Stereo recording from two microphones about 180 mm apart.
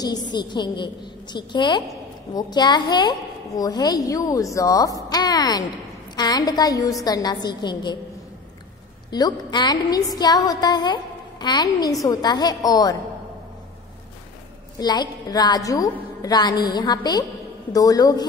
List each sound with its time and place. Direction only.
0.0 s a woman's voice: 25° left (ahead or behind)
9.1 s a woman's voice: 25° left (ahead or behind)
14.8 s a woman's voice: 25° left (ahead or behind)